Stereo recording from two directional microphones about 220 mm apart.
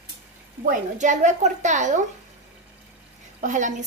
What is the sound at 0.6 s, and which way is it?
Speech, 35° right (ahead or behind).